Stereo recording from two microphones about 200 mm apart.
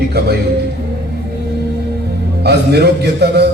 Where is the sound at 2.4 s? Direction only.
55° right (ahead or behind).